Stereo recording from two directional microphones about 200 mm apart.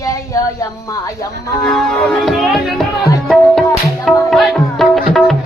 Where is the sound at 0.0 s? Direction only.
15° left (ahead or behind).